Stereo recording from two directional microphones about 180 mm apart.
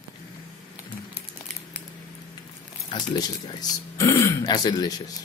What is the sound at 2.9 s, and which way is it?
Speech, 25° left (ahead or behind).